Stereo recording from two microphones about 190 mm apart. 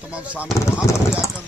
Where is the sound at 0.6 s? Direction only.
15° left (ahead or behind).